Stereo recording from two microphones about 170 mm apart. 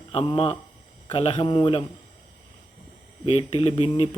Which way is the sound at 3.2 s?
35° left (ahead or behind).